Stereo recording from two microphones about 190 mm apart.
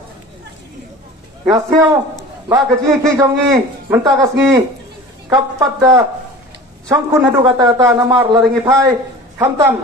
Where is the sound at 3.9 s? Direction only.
15° right (ahead or behind).